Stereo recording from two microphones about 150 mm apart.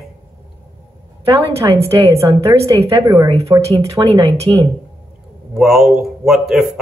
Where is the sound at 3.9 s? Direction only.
40° right (ahead or behind).